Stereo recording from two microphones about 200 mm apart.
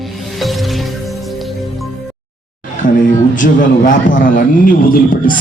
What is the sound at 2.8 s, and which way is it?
A man's voice, 40° left (ahead or behind).